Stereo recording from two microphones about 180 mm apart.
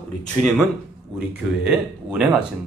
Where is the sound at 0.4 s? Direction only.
Centre (ahead or behind).